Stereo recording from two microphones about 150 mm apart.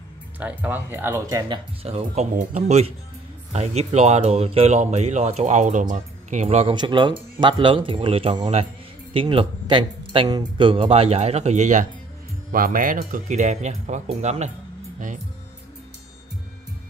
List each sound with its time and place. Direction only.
0.4 s speech: 10° right (ahead or behind)
1.8 s speech: 40° right (ahead or behind)
2.3 s speech: 50° right (ahead or behind)
6.4 s speech: 40° right (ahead or behind)
6.8 s speech: 30° right (ahead or behind); by 11.9 s 55° right (ahead or behind)
12.4 s speech: 65° right (ahead or behind); by 14.5 s 50° right (ahead or behind)